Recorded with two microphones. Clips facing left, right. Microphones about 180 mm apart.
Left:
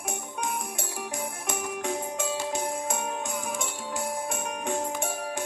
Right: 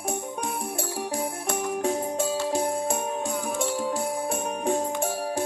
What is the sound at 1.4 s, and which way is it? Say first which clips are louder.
Music: right 5 dB; 35° right (ahead or behind).